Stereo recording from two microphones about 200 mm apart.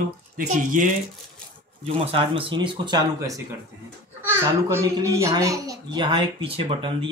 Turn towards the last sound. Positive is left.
turn(degrees=-25)  # may be behind; listen again after turning